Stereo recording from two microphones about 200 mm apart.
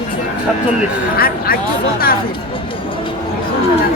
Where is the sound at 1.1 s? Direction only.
50° left (ahead or behind).